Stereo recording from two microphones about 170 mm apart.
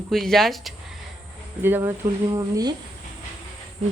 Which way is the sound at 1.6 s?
15° right (ahead or behind).